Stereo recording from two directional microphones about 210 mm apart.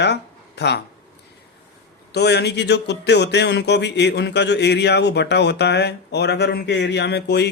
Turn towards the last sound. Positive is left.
turn(degrees=50)  # may be behind; listen again after turning